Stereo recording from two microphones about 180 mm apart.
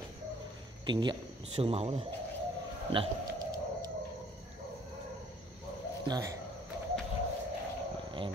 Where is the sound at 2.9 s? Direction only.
30° right (ahead or behind).